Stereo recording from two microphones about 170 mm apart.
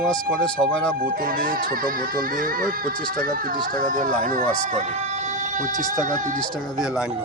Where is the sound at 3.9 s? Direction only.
50° right (ahead or behind).